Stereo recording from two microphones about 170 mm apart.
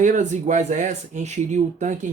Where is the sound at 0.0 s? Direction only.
50° right (ahead or behind).